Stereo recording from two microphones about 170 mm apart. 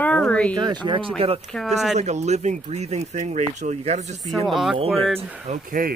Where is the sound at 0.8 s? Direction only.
30° right (ahead or behind).